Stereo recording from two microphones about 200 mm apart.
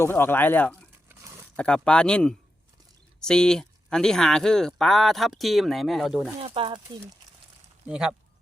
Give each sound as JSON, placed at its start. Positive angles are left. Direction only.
{"t": 0.0, "sound": "speech", "side_deg": 10}
{"t": 6.4, "sound": "speech", "side_deg": -25}
{"t": 7.9, "sound": "speech", "side_deg": -5}